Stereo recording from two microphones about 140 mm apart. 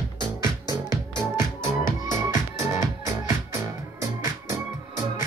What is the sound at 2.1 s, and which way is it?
Music, 20° right (ahead or behind).